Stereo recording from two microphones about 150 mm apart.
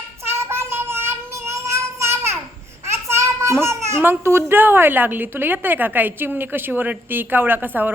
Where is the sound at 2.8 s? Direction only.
20° right (ahead or behind).